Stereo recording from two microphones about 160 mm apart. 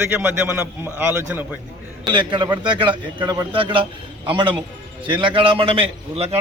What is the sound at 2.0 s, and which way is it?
A man's voice, 30° right (ahead or behind).